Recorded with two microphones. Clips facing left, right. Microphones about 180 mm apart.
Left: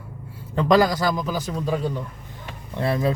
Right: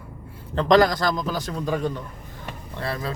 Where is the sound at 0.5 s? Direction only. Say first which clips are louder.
Even; 10° left (ahead or behind).